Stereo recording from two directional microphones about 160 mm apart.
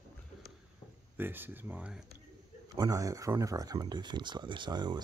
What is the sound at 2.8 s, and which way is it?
Speech, 20° right (ahead or behind).